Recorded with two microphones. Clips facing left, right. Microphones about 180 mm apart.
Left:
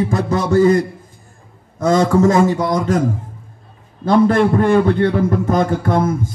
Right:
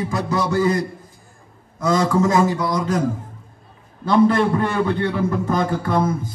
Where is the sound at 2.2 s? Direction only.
30° left (ahead or behind).